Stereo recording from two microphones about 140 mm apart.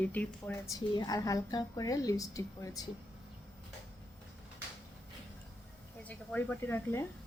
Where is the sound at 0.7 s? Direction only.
25° left (ahead or behind).